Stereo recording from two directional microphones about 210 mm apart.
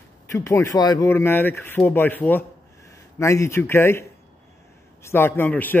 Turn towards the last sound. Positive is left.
turn(degrees=10)  # may be behind; listen again after turning